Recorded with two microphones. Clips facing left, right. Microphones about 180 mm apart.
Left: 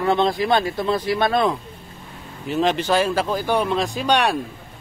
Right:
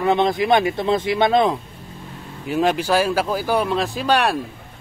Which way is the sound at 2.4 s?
10° right (ahead or behind).